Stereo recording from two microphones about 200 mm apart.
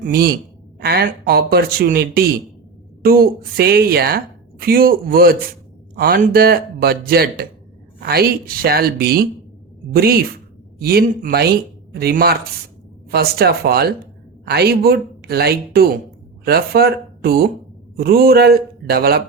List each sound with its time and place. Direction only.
0.0 s speech: 50° right (ahead or behind)